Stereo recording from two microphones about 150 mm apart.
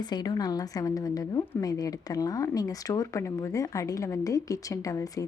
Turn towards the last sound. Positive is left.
turn(degrees=20)  # may be behind; listen again after turning